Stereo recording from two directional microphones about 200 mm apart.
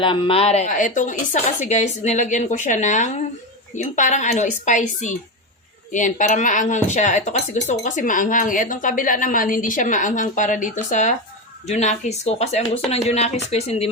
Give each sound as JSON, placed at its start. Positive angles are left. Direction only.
{"t": 0.0, "sound": "speech", "side_deg": 25}